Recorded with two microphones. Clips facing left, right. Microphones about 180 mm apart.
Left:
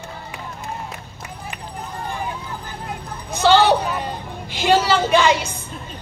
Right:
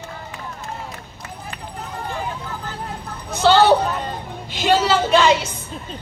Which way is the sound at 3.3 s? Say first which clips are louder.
Right 1 dB; 15° left (ahead or behind).